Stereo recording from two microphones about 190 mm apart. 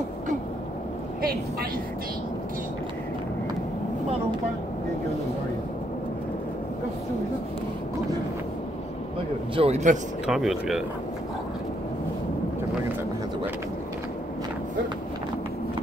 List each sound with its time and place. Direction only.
9.6 s a man's voice: 35° right (ahead or behind)
10.2 s speech: centre (ahead or behind)